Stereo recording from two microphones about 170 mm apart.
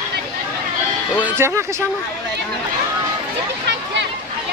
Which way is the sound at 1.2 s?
10° right (ahead or behind).